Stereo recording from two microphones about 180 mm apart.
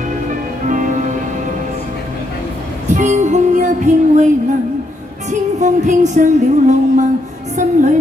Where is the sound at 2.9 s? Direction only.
45° right (ahead or behind).